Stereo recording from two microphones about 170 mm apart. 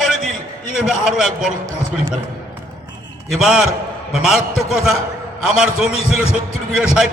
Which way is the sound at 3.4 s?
5° right (ahead or behind).